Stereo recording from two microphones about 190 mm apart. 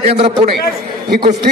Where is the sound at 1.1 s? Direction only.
60° right (ahead or behind).